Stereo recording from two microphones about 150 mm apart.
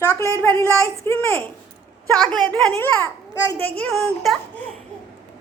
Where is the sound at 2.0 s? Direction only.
25° right (ahead or behind).